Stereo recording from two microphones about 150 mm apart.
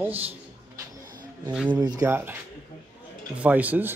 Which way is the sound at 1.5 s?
10° right (ahead or behind).